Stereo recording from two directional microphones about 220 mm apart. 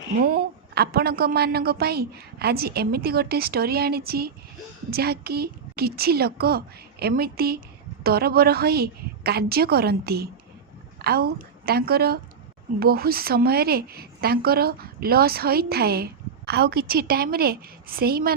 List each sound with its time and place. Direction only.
0.2 s a woman's voice: 40° right (ahead or behind)